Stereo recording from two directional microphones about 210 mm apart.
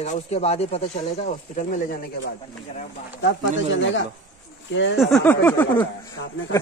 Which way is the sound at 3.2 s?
60° left (ahead or behind).